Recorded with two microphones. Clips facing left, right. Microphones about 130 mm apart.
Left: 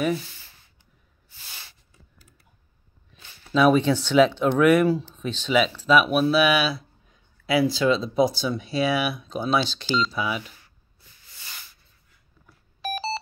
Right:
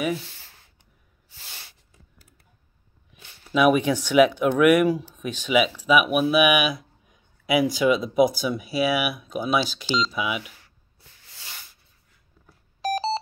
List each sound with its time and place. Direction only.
3.5 s speech: 10° right (ahead or behind)
8.2 s speech: 25° left (ahead or behind)
8.5 s speech: 5° right (ahead or behind)
12.4 s beep: 35° right (ahead or behind)